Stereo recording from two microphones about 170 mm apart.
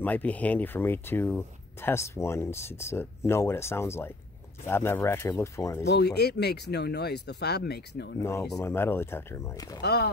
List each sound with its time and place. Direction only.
0.0 s speech: 10° left (ahead or behind)
5.9 s speech: 75° left (ahead or behind)
8.2 s speech: 15° left (ahead or behind)
9.8 s speech: 75° left (ahead or behind)